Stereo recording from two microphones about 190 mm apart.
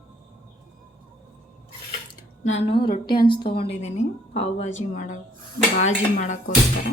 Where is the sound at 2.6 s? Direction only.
25° left (ahead or behind); by 6.4 s 40° left (ahead or behind).